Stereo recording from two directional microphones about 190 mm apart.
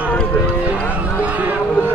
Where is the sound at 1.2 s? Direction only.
10° right (ahead or behind).